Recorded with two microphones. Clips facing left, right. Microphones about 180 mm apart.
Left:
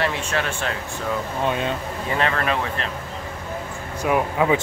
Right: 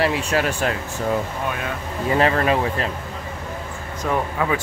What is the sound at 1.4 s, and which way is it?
Speech, 25° left (ahead or behind).